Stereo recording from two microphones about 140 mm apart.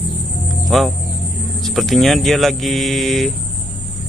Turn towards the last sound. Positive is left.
turn(degrees=0)  # may be behind; listen again after turning